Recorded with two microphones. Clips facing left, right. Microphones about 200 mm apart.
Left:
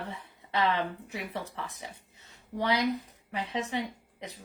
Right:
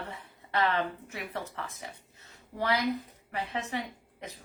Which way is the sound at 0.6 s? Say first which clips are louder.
Left 1 dB; 20° left (ahead or behind).